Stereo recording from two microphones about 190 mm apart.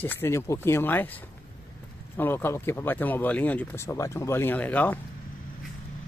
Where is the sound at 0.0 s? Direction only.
10° left (ahead or behind).